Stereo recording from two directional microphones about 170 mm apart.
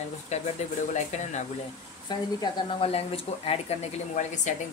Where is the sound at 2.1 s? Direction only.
30° left (ahead or behind); by 4.5 s 45° left (ahead or behind).